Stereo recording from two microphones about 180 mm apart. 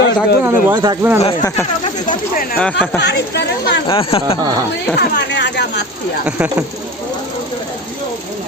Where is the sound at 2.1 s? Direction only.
50° left (ahead or behind).